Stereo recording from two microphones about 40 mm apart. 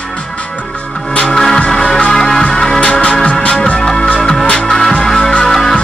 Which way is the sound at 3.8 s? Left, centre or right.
Centre.